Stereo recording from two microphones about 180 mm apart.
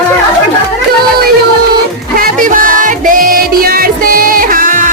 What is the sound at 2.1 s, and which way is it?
Music, 50° right (ahead or behind).